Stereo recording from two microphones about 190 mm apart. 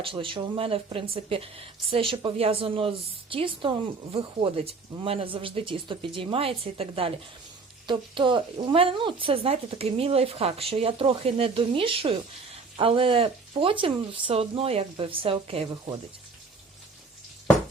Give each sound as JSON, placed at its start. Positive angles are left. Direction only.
{"t": 0.0, "sound": "a woman's voice", "side_deg": -25}